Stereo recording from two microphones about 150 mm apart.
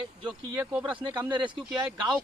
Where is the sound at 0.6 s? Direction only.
10° right (ahead or behind).